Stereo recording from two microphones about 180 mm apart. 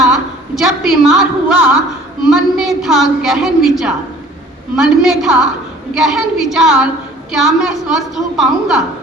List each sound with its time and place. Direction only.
0.0 s a woman's voice: centre (ahead or behind)